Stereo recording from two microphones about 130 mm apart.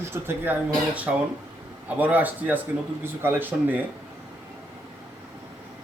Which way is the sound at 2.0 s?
15° right (ahead or behind).